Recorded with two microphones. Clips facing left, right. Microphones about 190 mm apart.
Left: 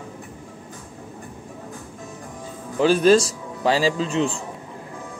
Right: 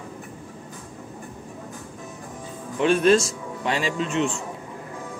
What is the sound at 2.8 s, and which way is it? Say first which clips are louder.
A man's voice: left 2 dB; 35° left (ahead or behind).